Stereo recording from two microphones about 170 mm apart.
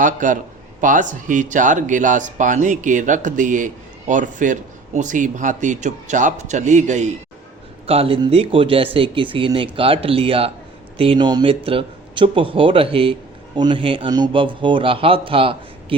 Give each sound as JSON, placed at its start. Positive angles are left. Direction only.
{"t": 0.0, "sound": "speech", "side_deg": -50}
{"t": 7.9, "sound": "a man's voice", "side_deg": -35}